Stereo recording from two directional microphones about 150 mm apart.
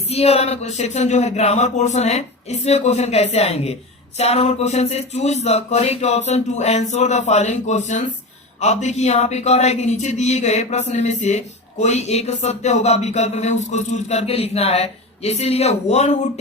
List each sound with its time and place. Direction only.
0.1 s speech: 45° left (ahead or behind)